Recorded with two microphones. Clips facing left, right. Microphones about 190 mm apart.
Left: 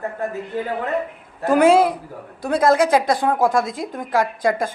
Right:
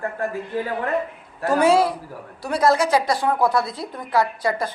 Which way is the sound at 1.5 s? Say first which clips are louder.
Left 3 dB; 55° left (ahead or behind).